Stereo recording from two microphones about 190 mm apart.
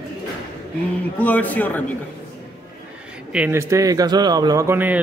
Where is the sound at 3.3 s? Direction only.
10° right (ahead or behind).